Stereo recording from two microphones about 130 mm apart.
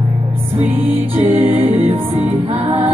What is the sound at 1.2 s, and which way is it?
Music, 15° right (ahead or behind).